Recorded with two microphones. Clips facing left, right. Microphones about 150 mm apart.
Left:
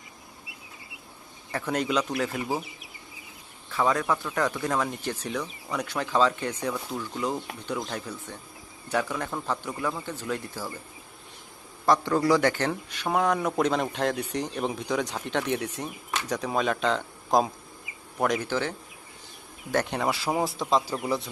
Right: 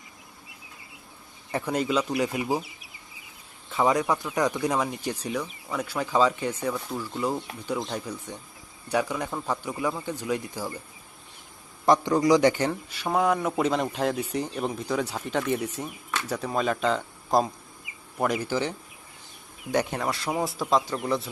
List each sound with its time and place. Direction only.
1.5 s speech: 10° right (ahead or behind)
3.7 s speech: 20° right (ahead or behind)
11.9 s speech: 15° right (ahead or behind)
19.7 s speech: 10° right (ahead or behind)
20.0 s speech: 5° left (ahead or behind)